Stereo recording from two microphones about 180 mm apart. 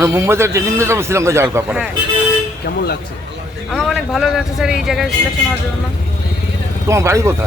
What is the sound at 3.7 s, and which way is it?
A man's voice, centre (ahead or behind).